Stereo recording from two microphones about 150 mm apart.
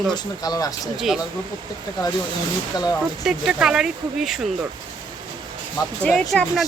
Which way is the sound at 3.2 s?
5° right (ahead or behind).